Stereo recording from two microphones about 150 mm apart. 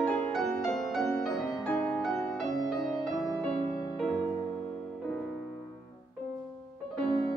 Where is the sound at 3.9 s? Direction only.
5° left (ahead or behind).